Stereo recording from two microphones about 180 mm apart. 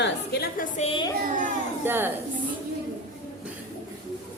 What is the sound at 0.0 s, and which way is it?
Music, 70° left (ahead or behind).